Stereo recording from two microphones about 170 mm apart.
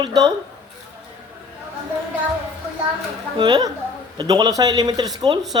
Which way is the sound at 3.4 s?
25° right (ahead or behind).